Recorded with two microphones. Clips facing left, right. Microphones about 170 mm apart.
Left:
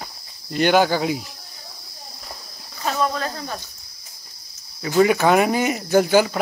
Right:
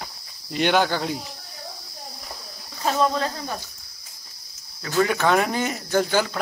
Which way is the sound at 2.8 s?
25° right (ahead or behind).